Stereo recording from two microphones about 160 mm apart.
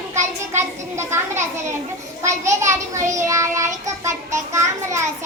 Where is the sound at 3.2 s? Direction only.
20° right (ahead or behind).